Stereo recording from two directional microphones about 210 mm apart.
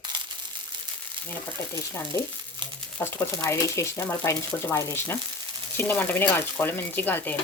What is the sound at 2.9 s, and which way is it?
Speech, 10° left (ahead or behind).